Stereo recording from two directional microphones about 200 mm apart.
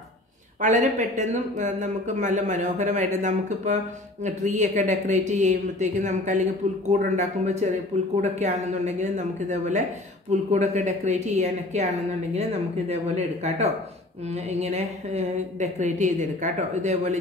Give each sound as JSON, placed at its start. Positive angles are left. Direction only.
{"t": 0.6, "sound": "speech", "side_deg": -40}